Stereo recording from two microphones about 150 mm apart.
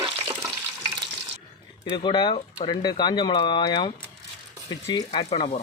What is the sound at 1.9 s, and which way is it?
Speech, 30° left (ahead or behind).